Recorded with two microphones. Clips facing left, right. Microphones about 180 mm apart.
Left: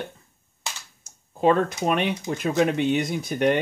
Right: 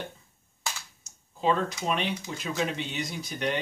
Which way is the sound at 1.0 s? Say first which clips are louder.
Left 7 dB; 55° left (ahead or behind).